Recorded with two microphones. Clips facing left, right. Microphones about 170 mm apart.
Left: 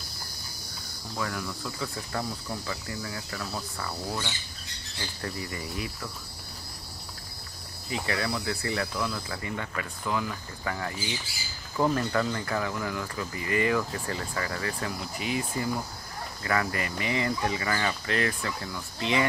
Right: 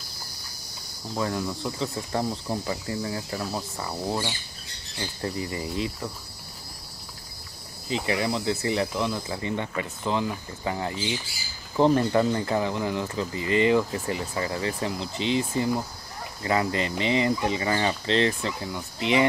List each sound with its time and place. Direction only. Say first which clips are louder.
1.1 s speech: right 5 dB; 25° right (ahead or behind)
7.9 s speech: right 4 dB; 20° right (ahead or behind)